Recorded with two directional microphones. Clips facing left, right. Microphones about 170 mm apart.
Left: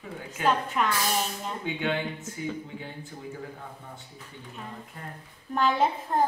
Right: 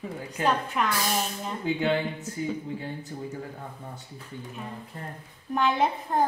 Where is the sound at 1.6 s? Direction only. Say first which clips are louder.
Right 4 dB; 35° right (ahead or behind).